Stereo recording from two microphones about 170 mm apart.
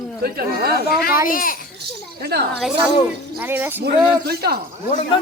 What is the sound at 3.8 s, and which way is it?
Speech, 70° right (ahead or behind).